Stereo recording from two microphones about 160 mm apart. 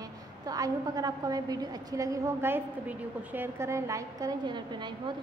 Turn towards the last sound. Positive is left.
turn(degrees=-30)  # may be behind; listen again after turning